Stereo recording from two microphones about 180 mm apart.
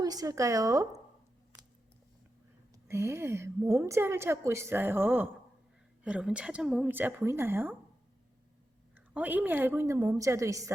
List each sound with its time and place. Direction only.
0.0 s a woman's voice: 20° right (ahead or behind)
2.7 s a woman's voice: 15° right (ahead or behind)
9.0 s a woman's voice: 10° right (ahead or behind)